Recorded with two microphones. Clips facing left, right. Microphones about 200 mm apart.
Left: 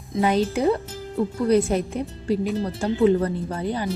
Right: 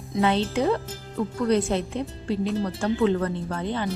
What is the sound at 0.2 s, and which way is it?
Speech, 10° left (ahead or behind).